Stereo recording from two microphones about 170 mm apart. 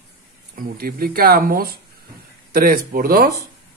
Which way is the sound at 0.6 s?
60° right (ahead or behind).